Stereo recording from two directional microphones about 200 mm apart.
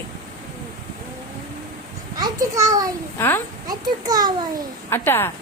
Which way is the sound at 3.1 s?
10° left (ahead or behind).